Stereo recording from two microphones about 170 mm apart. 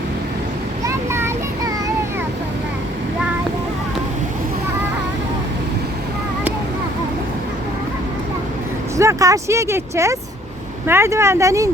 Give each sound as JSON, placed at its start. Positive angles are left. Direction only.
{"t": 0.9, "sound": "child singing", "side_deg": -15}
{"t": 9.0, "sound": "speech", "side_deg": -20}